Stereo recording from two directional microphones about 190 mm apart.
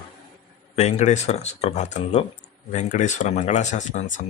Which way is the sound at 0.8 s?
35° left (ahead or behind).